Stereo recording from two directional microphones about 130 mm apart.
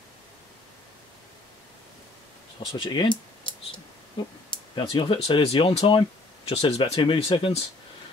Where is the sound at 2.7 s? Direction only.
40° left (ahead or behind).